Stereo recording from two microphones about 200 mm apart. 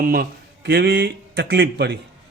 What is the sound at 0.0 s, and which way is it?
A man's voice, 50° right (ahead or behind).